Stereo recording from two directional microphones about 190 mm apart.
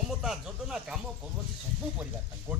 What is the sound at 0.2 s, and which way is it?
Speech, 5° right (ahead or behind).